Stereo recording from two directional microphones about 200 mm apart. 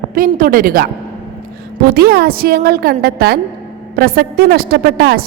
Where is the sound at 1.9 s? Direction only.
50° right (ahead or behind).